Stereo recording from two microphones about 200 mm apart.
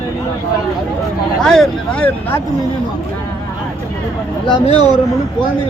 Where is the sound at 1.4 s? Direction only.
5° left (ahead or behind).